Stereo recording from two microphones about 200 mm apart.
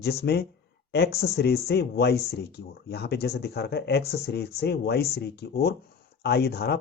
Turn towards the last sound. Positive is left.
turn(degrees=50)  # may be behind; listen again after turning